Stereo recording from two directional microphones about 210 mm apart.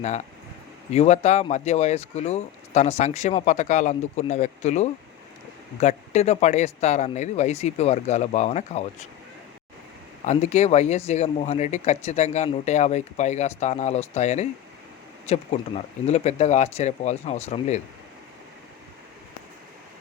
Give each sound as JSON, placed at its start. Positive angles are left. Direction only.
{"t": 0.9, "sound": "speech", "side_deg": 30}
{"t": 10.2, "sound": "speech", "side_deg": 35}